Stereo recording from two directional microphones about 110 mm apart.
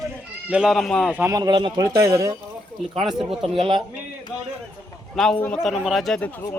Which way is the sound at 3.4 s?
55° right (ahead or behind).